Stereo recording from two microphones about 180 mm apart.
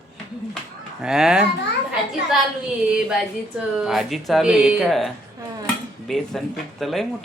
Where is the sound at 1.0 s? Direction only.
5° right (ahead or behind).